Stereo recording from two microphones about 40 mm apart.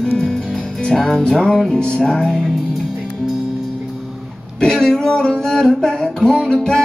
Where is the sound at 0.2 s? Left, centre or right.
Centre.